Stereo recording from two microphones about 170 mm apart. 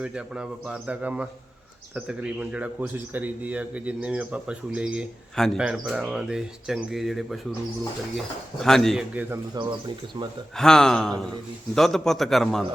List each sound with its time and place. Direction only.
0.0 s speech: 5° right (ahead or behind)
8.6 s speech: centre (ahead or behind)
9.6 s speech: 25° right (ahead or behind)
10.6 s speech: 5° left (ahead or behind)